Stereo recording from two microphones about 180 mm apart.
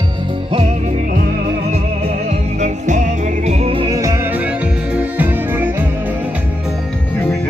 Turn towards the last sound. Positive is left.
turn(degrees=-10)  # may be behind; listen again after turning